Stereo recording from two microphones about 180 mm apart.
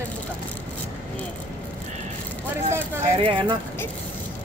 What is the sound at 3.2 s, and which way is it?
Speech, 30° right (ahead or behind).